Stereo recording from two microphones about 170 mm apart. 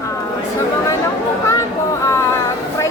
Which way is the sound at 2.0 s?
20° left (ahead or behind).